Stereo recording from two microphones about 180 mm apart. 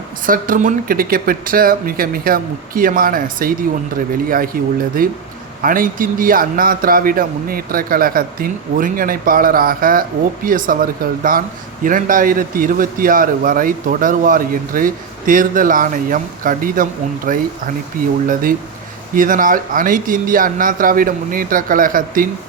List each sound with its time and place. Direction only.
0.3 s speech: 50° right (ahead or behind)
19.1 s speech: 50° right (ahead or behind)